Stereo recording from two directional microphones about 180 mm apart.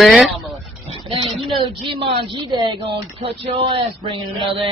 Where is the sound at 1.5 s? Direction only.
25° right (ahead or behind).